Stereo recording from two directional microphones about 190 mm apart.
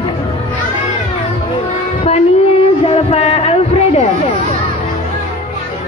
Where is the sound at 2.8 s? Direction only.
30° left (ahead or behind).